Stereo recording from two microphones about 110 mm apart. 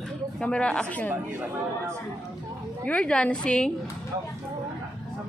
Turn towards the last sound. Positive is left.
turn(degrees=10)  # may be behind; listen again after turning